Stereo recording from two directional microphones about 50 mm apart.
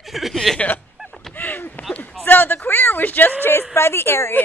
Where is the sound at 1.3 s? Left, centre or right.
Left.